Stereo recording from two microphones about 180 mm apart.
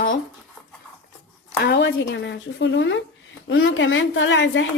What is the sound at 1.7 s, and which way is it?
A woman's voice, 80° left.